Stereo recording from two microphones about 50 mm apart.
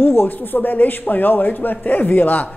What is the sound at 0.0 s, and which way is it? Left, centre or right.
A man's voice, left.